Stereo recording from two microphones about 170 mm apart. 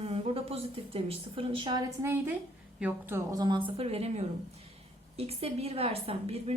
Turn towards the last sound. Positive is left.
turn(degrees=-35)  # may be behind; listen again after turning